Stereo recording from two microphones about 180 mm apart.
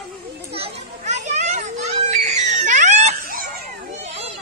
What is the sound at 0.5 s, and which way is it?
Children playing, 35° right (ahead or behind).